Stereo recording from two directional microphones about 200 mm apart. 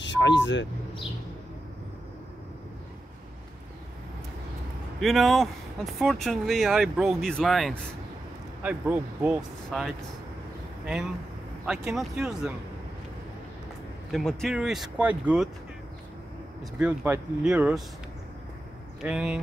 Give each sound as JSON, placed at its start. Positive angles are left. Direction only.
{"t": 0.0, "sound": "speech", "side_deg": 65}
{"t": 5.0, "sound": "speech", "side_deg": 0}
{"t": 11.6, "sound": "speech", "side_deg": -5}
{"t": 14.1, "sound": "speech", "side_deg": 0}
{"t": 16.7, "sound": "speech", "side_deg": -10}
{"t": 19.0, "sound": "speech", "side_deg": -5}